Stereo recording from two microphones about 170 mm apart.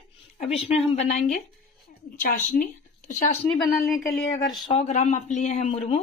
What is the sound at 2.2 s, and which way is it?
Speech, 50° left (ahead or behind).